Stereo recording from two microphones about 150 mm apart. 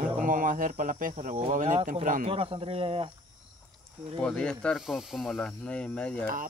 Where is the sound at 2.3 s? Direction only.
40° right (ahead or behind).